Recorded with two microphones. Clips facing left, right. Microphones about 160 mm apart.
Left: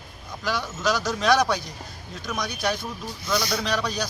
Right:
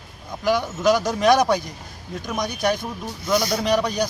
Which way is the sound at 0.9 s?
50° right (ahead or behind).